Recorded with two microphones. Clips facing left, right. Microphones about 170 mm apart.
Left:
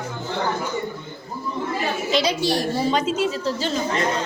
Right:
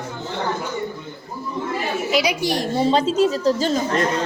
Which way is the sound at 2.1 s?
10° right (ahead or behind).